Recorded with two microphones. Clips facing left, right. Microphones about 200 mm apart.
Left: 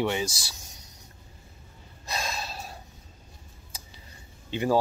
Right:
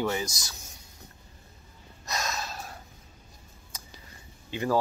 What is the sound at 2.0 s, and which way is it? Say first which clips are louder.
Gasp: even; 30° left (ahead or behind).